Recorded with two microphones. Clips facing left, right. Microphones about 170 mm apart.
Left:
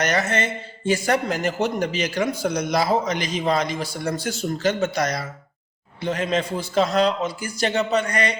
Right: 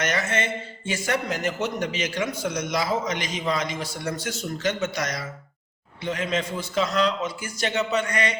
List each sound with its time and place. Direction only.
0.0 s a man's voice: 35° left (ahead or behind)